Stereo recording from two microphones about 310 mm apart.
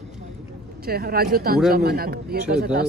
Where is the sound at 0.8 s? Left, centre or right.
Right.